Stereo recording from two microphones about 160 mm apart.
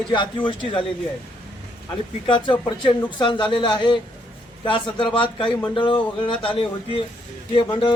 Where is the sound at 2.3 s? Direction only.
30° left (ahead or behind).